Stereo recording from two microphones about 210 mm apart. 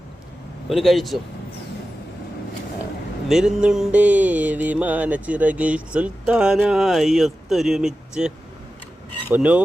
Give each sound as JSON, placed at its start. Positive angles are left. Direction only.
{"t": 0.7, "sound": "mantra", "side_deg": 0}
{"t": 3.2, "sound": "mantra", "side_deg": -5}
{"t": 9.3, "sound": "speech", "side_deg": -5}